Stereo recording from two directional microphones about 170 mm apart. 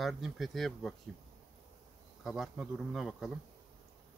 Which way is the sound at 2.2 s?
Centre (ahead or behind).